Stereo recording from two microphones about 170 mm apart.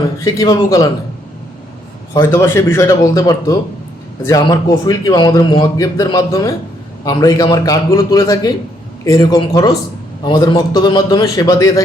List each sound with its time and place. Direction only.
0.2 s a man's voice: 20° left (ahead or behind)
2.3 s a man's voice: 15° left (ahead or behind)